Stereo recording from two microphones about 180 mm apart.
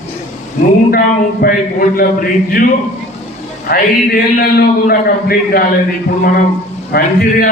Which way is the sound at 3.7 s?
55° left (ahead or behind).